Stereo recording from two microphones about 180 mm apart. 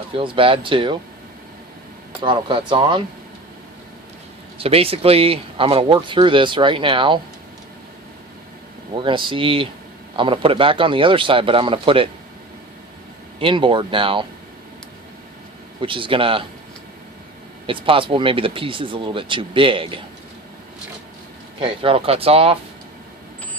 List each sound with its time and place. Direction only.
0.2 s speech: 30° right (ahead or behind)
2.2 s speech: 30° right (ahead or behind)
4.5 s speech: 30° right (ahead or behind)
9.0 s speech: 25° right (ahead or behind)
13.4 s speech: 30° right (ahead or behind)
15.8 s speech: 30° right (ahead or behind)
17.7 s speech: 30° right (ahead or behind)
21.6 s speech: 30° right (ahead or behind)